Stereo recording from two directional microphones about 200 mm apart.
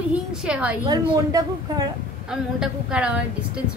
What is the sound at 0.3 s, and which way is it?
Speech, 5° right (ahead or behind).